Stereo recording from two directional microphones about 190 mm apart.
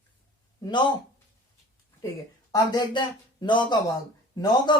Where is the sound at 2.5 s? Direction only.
25° left (ahead or behind).